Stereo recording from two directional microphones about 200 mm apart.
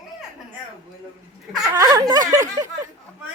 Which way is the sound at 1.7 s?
20° right (ahead or behind).